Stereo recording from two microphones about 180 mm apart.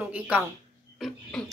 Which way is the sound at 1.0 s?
5° left (ahead or behind).